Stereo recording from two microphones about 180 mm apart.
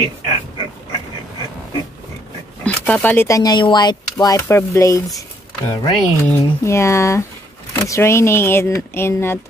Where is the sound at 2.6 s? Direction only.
5° left (ahead or behind).